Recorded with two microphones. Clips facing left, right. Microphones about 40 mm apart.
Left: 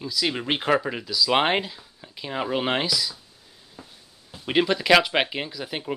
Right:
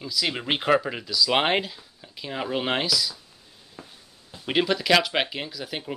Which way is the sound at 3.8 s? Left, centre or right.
Right.